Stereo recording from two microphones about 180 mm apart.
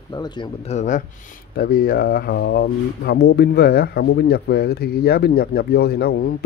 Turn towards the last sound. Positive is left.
turn(degrees=60)  # may be behind; listen again after turning